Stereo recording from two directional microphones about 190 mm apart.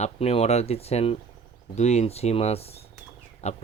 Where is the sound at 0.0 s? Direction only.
35° left (ahead or behind).